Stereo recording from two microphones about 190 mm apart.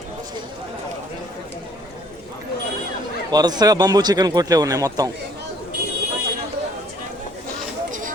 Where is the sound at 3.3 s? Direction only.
20° right (ahead or behind).